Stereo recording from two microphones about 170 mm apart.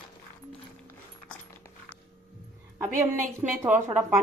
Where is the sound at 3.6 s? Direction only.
5° right (ahead or behind).